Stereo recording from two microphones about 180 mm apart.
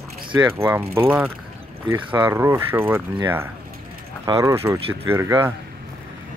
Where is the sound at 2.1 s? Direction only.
10° right (ahead or behind).